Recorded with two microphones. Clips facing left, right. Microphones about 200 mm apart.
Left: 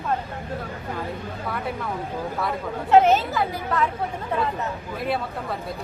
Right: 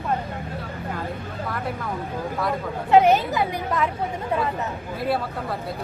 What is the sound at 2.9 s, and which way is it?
Speech, 15° right (ahead or behind).